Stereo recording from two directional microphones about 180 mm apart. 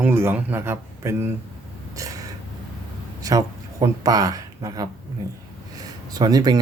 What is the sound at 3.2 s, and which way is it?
Speech, 20° right (ahead or behind).